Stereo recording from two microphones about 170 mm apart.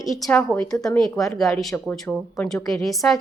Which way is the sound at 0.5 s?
15° left (ahead or behind).